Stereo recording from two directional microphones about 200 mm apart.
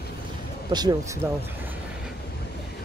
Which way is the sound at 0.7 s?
15° right (ahead or behind).